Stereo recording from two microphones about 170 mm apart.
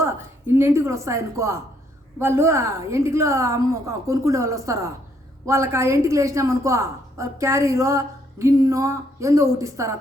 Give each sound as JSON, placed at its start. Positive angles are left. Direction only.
{"t": 0.0, "sound": "a woman's voice", "side_deg": -15}